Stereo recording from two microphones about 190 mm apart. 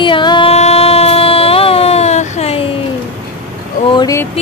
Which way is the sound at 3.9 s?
15° left (ahead or behind).